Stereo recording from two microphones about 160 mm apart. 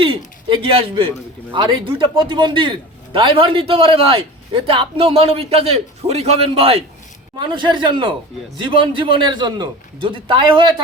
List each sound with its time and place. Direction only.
0.4 s a man's voice: 30° right (ahead or behind)